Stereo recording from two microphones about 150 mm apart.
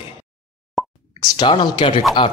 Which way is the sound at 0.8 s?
Centre (ahead or behind).